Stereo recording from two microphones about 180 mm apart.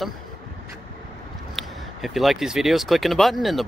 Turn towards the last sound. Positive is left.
turn(degrees=0)  # may be behind; listen again after turning